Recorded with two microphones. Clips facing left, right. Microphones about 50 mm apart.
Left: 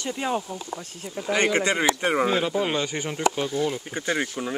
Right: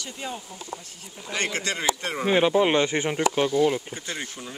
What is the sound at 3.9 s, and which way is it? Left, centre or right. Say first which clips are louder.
Speech: left 7 dB; left.